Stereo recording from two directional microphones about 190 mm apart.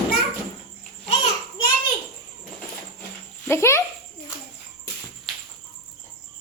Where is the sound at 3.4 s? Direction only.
15° left (ahead or behind).